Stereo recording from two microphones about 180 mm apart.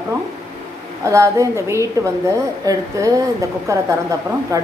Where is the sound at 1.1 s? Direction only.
15° right (ahead or behind).